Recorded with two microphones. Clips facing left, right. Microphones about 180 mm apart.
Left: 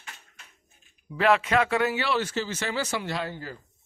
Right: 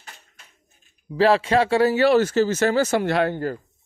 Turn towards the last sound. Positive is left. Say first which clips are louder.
# right 11 dB
turn(degrees=-55)  # may be behind; listen again after turning